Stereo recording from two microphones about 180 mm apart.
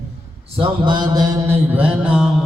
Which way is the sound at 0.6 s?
25° right (ahead or behind).